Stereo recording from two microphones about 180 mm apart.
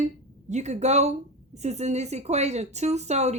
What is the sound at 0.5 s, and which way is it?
Speech, 40° right (ahead or behind).